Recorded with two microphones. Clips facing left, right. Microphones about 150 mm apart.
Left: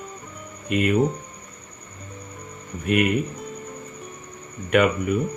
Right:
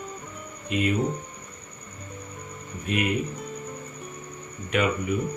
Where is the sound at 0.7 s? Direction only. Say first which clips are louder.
Left 3 dB; 60° left (ahead or behind).